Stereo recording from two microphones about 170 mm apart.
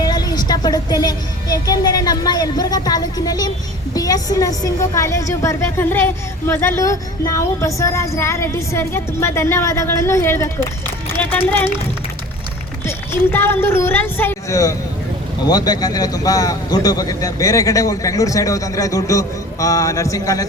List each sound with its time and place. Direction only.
0.0 s a man's voice: 25° left (ahead or behind)
13.3 s a woman's voice: 15° left (ahead or behind)